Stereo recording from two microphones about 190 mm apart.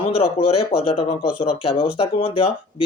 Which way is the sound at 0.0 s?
30° left (ahead or behind).